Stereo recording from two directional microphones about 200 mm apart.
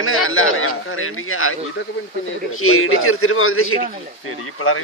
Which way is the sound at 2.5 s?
90° left.